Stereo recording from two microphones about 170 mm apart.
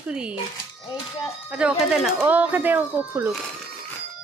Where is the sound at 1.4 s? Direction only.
5° right (ahead or behind).